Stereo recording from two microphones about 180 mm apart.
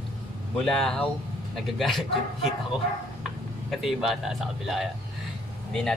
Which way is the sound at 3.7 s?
Centre (ahead or behind).